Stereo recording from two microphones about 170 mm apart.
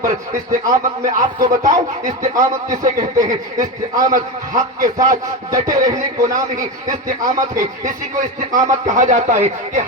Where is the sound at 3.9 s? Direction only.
50° right (ahead or behind).